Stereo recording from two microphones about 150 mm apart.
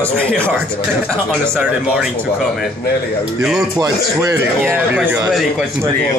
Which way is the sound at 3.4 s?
5° right (ahead or behind).